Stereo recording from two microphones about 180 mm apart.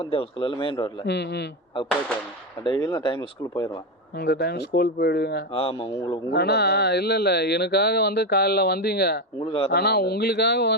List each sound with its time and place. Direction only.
0.0 s a man's voice: 30° left (ahead or behind)
1.0 s speech: 70° left (ahead or behind)
2.8 s a man's voice: 25° left (ahead or behind)
4.2 s speech: 65° left (ahead or behind)
5.5 s speech: 30° left (ahead or behind)
6.3 s speech: 65° left (ahead or behind)
9.4 s speech: 30° left (ahead or behind)
9.7 s speech: 65° left (ahead or behind)